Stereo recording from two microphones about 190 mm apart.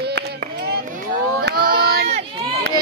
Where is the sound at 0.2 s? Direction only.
65° right (ahead or behind).